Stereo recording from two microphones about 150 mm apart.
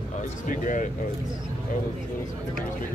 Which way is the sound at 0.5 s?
60° left (ahead or behind).